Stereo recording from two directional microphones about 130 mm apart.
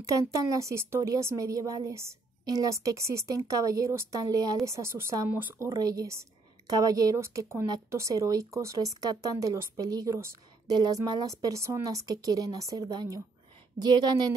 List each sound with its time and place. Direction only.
0.0 s a woman's voice: 25° right (ahead or behind)